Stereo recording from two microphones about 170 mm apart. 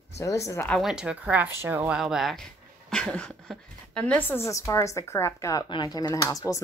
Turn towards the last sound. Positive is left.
turn(degrees=20)  # may be behind; listen again after turning